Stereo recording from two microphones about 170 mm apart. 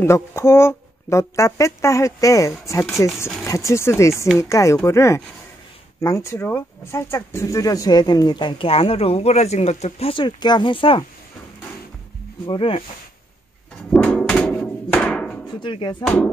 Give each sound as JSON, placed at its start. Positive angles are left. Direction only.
{"t": 0.0, "sound": "speech", "side_deg": 15}
{"t": 12.4, "sound": "speech", "side_deg": 30}
{"t": 13.9, "sound": "hammer", "side_deg": 5}
{"t": 15.6, "sound": "speech", "side_deg": 30}